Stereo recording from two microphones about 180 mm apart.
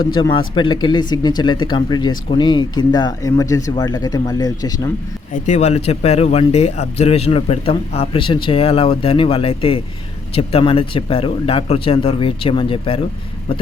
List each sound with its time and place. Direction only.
0.0 s speech: 25° left (ahead or behind)
5.3 s speech: 40° left (ahead or behind)